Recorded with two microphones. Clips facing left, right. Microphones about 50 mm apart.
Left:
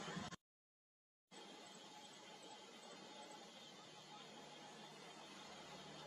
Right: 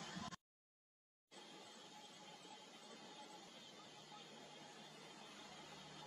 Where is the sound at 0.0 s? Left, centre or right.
Left.